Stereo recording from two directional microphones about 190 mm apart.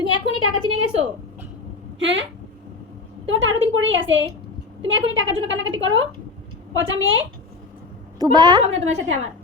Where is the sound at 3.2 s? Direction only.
90° right.